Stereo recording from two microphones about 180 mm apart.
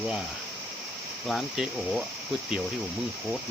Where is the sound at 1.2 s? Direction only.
Centre (ahead or behind).